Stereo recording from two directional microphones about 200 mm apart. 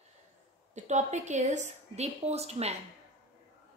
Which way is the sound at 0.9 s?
35° right (ahead or behind).